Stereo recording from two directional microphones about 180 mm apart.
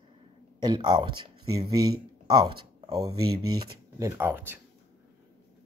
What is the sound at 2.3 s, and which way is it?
Speech, 25° right (ahead or behind).